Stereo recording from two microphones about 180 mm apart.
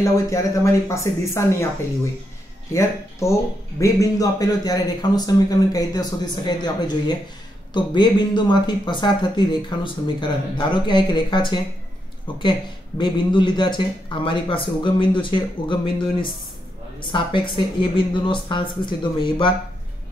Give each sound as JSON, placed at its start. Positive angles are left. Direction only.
{"t": 0.0, "sound": "speech", "side_deg": 15}
{"t": 2.7, "sound": "speech", "side_deg": 15}